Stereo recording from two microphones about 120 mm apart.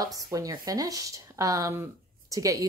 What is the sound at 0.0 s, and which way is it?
A woman's voice, 30° right (ahead or behind).